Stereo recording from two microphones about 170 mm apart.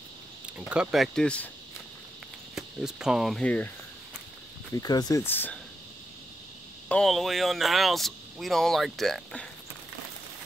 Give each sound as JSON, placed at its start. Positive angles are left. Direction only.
{"t": 0.6, "sound": "speech", "side_deg": -5}
{"t": 2.5, "sound": "speech", "side_deg": -5}
{"t": 4.7, "sound": "speech", "side_deg": 20}
{"t": 6.9, "sound": "speech", "side_deg": 0}